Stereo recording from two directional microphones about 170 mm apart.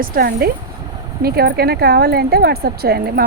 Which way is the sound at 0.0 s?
60° right (ahead or behind).